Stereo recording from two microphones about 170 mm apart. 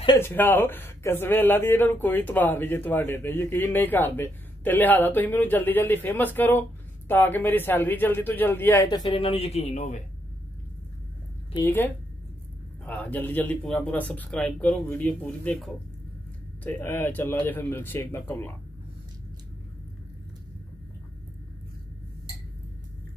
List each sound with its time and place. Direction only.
0.2 s speech: 10° left (ahead or behind); by 10.0 s 45° left (ahead or behind)
11.5 s speech: 15° left (ahead or behind)